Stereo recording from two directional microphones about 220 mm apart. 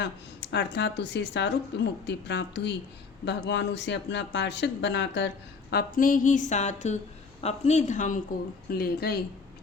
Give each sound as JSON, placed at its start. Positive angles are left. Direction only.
{"t": 0.0, "sound": "speech", "side_deg": 50}
{"t": 5.7, "sound": "a woman's voice", "side_deg": 40}
{"t": 8.7, "sound": "speech", "side_deg": 45}